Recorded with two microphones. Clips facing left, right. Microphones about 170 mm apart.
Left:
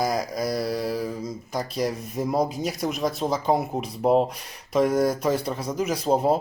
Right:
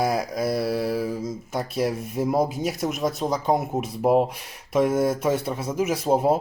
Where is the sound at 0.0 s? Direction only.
5° right (ahead or behind).